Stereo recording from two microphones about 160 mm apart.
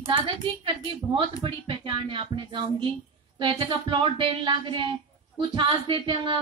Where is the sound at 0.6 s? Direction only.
30° right (ahead or behind).